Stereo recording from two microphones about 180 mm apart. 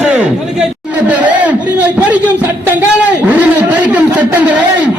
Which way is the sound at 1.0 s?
10° right (ahead or behind).